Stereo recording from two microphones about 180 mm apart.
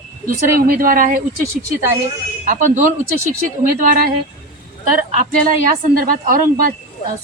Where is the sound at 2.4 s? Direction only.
45° right (ahead or behind).